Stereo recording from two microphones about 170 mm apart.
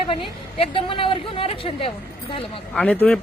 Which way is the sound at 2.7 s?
5° left (ahead or behind).